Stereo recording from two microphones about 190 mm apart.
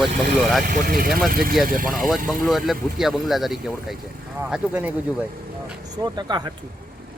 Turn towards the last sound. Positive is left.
turn(degrees=-20)  # may be behind; listen again after turning